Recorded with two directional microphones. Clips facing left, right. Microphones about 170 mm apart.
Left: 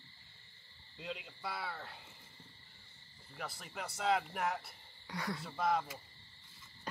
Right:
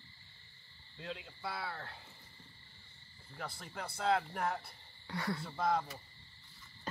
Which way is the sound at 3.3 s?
5° left (ahead or behind).